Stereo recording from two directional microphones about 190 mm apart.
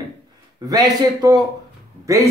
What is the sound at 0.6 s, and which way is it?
Speech, 20° right (ahead or behind).